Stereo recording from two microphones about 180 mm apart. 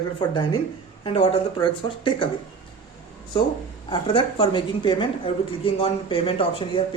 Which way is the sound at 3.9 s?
30° left (ahead or behind).